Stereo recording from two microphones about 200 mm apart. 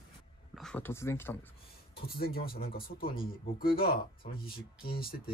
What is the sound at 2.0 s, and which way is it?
Speech, 50° left (ahead or behind).